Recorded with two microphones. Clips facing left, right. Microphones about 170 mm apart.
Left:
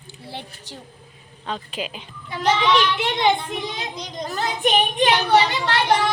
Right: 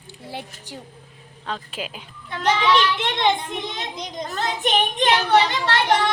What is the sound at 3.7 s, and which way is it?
Speech, 20° right (ahead or behind).